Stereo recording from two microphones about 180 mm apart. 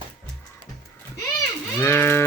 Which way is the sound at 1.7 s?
15° left (ahead or behind).